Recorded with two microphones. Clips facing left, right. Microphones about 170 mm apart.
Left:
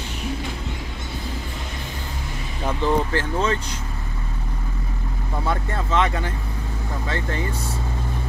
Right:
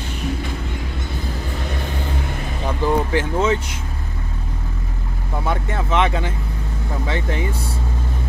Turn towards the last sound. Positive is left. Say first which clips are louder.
# right 3 dB
turn(degrees=-15)  # may be behind; listen again after turning